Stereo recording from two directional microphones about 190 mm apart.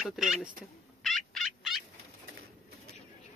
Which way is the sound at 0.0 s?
Centre (ahead or behind).